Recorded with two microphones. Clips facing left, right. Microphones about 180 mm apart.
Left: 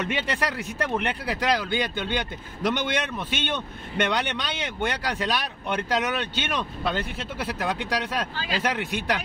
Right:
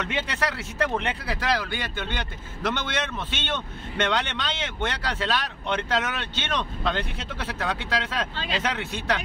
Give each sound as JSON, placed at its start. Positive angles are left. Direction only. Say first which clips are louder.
{"t": 0.4, "sound": "speech", "louder": "right 1 dB", "side_deg": 15}
{"t": 8.4, "sound": "speech", "louder": "even", "side_deg": -25}
{"t": 8.6, "sound": "speech", "louder": "left 2 dB", "side_deg": 10}